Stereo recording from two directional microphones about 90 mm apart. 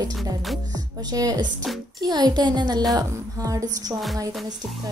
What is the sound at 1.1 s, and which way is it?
Speech, 50° right (ahead or behind).